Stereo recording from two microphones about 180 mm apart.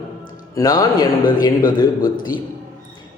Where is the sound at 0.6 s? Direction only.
20° left (ahead or behind).